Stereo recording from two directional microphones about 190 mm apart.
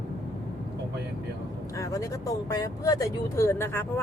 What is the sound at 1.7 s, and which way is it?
Speech, 15° left (ahead or behind).